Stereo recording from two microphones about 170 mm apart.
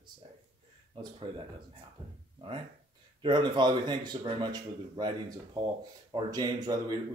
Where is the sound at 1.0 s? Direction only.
30° right (ahead or behind).